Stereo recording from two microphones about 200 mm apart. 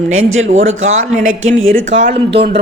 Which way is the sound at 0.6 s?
75° right (ahead or behind).